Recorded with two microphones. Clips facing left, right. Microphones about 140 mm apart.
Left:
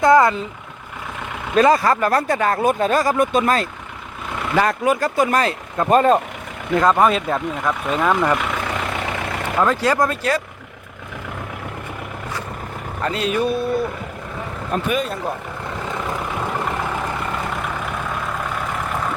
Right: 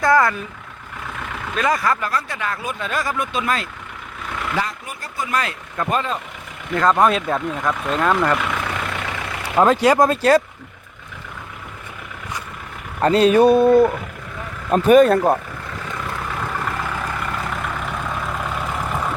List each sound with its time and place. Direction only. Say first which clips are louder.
0.0 s speech: left 3 dB; 20° left (ahead or behind)
1.5 s speech: left 6 dB; 30° left (ahead or behind)
2.0 s speech: left 7 dB; 50° left (ahead or behind)
4.5 s speech: left 12 dB; 65° left (ahead or behind)
5.3 s speech: left 4 dB; 35° left (ahead or behind)
5.9 s speech: left 10 dB; 50° left (ahead or behind)
6.7 s speech: left 1 dB; 5° left (ahead or behind)
9.8 s speech: right 4 dB; 20° right (ahead or behind)
13.0 s a sound: right 8 dB; 35° right (ahead or behind)
14.7 s speech: right 11 dB; 45° right (ahead or behind)
15.9 s vehicle: left 2 dB; 20° left (ahead or behind)
18.3 s vehicle: even; centre (ahead or behind)